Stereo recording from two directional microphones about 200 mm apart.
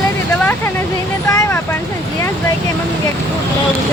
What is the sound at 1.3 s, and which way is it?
Speech, 15° left (ahead or behind).